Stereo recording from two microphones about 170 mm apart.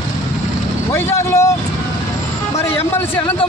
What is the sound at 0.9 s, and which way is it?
Speech, 15° left (ahead or behind).